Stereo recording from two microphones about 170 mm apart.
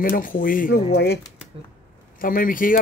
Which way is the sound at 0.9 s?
75° left (ahead or behind).